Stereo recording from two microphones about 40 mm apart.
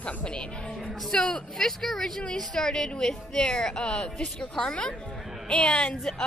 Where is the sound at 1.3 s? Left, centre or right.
Centre.